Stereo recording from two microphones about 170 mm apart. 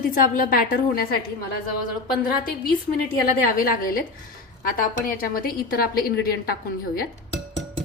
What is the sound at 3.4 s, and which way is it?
A woman's voice, 60° left (ahead or behind).